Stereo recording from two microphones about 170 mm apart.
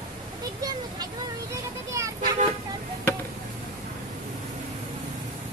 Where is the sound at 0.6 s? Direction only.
25° right (ahead or behind).